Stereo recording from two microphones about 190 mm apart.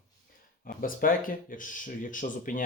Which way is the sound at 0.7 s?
45° left (ahead or behind).